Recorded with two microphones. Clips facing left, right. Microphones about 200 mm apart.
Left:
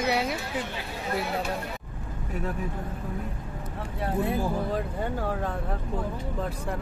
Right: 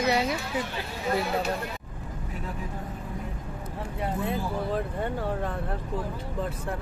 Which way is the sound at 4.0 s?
Centre (ahead or behind).